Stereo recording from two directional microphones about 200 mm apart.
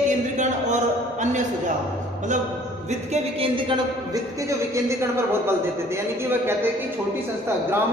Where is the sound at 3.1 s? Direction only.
25° right (ahead or behind).